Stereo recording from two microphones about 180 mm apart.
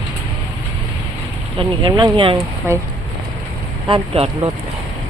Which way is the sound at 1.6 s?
25° right (ahead or behind).